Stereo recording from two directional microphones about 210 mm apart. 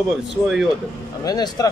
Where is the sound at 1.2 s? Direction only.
20° left (ahead or behind).